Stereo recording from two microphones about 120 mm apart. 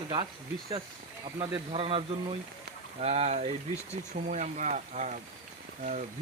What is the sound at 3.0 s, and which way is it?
Speech, 65° right (ahead or behind).